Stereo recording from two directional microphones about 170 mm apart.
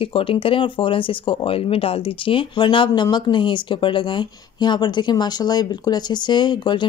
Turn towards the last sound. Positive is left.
turn(degrees=25)  # may be behind; listen again after turning